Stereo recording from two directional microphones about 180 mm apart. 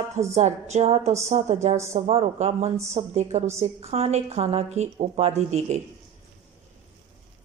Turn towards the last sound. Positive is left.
turn(degrees=-35)  # may be behind; listen again after turning